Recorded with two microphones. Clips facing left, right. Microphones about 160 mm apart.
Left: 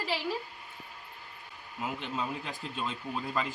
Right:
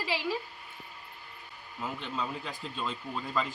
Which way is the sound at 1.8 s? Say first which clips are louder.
Left 1 dB; 5° left (ahead or behind).